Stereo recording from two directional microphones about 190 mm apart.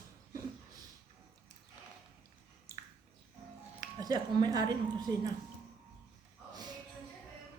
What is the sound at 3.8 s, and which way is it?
Speech, 20° right (ahead or behind).